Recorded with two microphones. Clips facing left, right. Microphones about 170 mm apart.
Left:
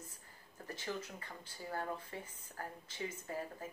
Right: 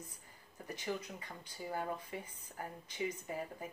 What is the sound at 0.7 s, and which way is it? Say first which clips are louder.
Speech: right 2 dB; 15° right (ahead or behind).